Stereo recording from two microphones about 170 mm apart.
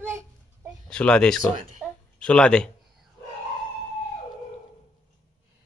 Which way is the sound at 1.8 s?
5° left (ahead or behind).